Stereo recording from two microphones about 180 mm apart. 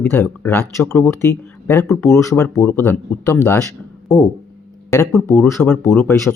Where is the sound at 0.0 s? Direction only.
10° left (ahead or behind).